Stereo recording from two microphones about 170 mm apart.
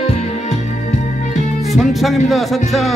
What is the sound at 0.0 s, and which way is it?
Music, 35° left (ahead or behind).